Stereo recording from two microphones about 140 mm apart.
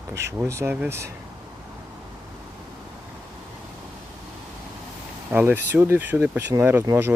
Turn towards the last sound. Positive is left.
turn(degrees=-15)  # may be behind; listen again after turning